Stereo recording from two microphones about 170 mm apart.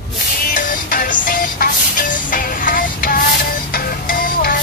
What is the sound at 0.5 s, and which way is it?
Music, 55° left (ahead or behind).